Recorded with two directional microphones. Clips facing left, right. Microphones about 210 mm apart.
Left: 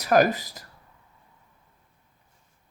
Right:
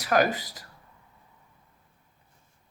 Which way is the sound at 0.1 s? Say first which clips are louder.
Left 4 dB; 40° left (ahead or behind).